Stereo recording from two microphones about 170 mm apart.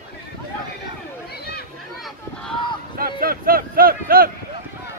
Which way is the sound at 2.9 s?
60° right (ahead or behind).